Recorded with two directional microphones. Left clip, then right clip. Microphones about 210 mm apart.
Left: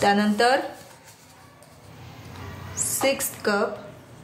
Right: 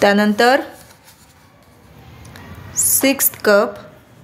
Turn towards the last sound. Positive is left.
turn(degrees=-45)  # may be behind; listen again after turning